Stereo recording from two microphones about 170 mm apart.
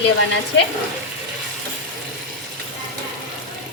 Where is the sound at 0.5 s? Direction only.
90° left.